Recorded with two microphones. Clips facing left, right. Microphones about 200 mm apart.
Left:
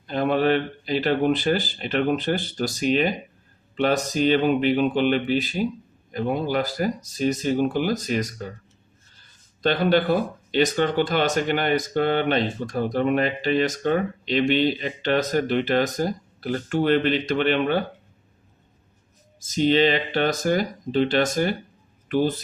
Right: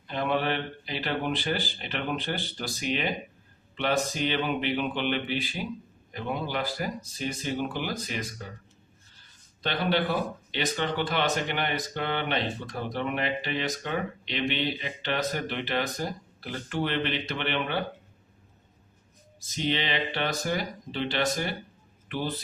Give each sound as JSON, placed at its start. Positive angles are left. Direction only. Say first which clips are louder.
{"t": 0.1, "sound": "speech", "louder": "left 7 dB", "side_deg": 40}
{"t": 9.6, "sound": "speech", "louder": "left 7 dB", "side_deg": 45}
{"t": 19.5, "sound": "speech", "louder": "left 10 dB", "side_deg": 45}